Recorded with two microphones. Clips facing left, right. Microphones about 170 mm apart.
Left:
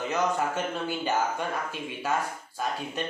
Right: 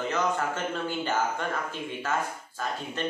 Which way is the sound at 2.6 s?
15° left (ahead or behind).